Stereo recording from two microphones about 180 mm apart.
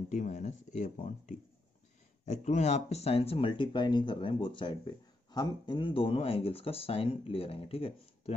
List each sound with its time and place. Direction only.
0.1 s speech: 40° left (ahead or behind)